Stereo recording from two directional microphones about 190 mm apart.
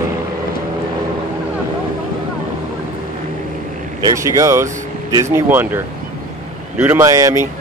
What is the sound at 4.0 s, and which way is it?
Speech, 15° right (ahead or behind).